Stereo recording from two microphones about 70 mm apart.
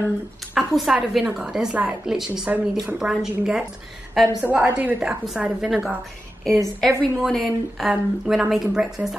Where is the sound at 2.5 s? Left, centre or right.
Centre.